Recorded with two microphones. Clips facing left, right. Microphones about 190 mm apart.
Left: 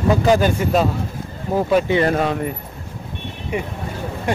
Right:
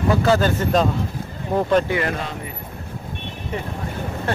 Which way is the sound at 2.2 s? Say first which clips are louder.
Left 10 dB; 60° left (ahead or behind).